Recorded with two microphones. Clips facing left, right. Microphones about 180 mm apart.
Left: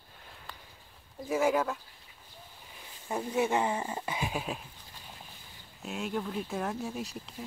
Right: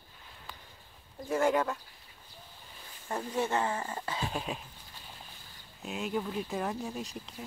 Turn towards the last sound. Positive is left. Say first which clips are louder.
# left 1 dB
turn(degrees=0)  # may be behind; listen again after turning